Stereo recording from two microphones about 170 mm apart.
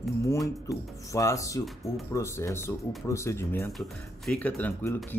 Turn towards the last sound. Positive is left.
turn(degrees=10)  # may be behind; listen again after turning